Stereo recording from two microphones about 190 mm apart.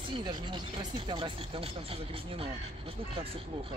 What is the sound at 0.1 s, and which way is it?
Speech, 25° right (ahead or behind).